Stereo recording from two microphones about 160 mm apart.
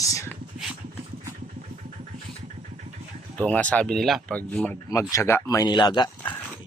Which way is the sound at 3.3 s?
10° left (ahead or behind).